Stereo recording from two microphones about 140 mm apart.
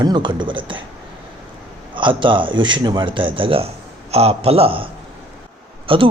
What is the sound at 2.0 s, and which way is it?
A man's voice, 35° right (ahead or behind).